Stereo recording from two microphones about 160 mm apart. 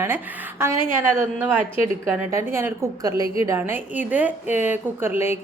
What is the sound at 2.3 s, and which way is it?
A woman's voice, 15° right (ahead or behind).